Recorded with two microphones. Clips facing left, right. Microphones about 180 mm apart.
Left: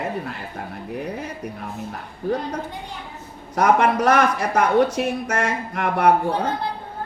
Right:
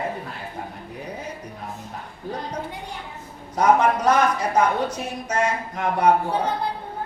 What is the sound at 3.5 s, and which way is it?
Speech, 70° left (ahead or behind).